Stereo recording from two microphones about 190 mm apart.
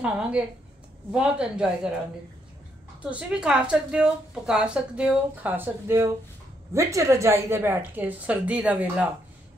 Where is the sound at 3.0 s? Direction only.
5° right (ahead or behind).